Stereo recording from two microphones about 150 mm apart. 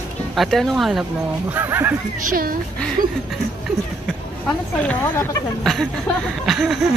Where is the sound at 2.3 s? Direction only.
75° right (ahead or behind).